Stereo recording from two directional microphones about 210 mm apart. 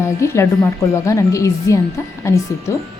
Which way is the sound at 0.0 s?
15° left (ahead or behind).